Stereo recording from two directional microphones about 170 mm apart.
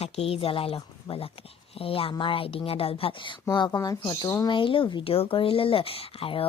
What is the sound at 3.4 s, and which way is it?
Speech, 25° left (ahead or behind).